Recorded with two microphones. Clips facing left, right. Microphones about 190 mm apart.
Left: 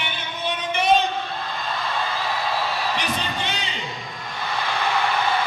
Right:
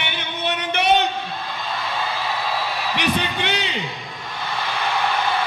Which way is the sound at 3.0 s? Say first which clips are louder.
Right 4 dB; 65° right (ahead or behind).